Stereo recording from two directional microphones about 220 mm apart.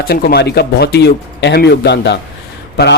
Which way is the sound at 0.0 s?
45° left (ahead or behind).